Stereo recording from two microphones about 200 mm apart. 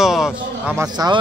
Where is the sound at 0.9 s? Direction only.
20° right (ahead or behind).